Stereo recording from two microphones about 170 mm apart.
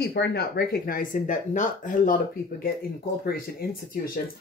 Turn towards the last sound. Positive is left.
turn(degrees=60)  # may be behind; listen again after turning